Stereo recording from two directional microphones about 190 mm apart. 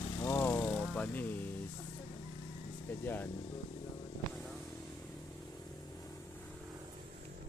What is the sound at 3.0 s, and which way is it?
Speech, 10° left (ahead or behind).